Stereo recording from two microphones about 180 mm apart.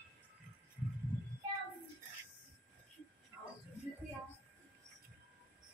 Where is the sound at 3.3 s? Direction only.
15° right (ahead or behind).